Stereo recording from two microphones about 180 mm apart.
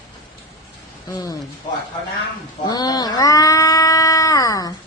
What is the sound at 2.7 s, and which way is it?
Cat, 20° left (ahead or behind).